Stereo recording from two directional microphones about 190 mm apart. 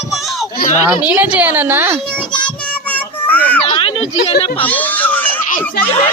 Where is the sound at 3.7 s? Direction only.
25° left (ahead or behind).